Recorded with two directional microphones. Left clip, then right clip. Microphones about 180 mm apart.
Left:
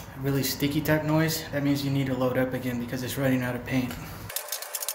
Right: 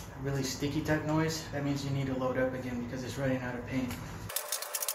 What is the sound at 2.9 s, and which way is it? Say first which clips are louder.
Speech: left 6 dB; 60° left (ahead or behind).